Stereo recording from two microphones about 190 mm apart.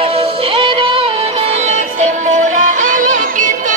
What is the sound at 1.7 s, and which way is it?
Music, 40° right (ahead or behind).